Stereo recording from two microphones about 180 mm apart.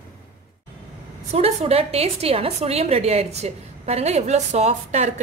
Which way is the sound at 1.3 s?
35° right (ahead or behind).